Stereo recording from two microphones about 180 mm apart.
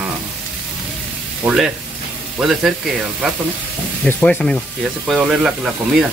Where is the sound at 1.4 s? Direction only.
5° right (ahead or behind).